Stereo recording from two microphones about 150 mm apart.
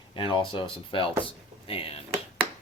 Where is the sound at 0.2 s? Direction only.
35° left (ahead or behind).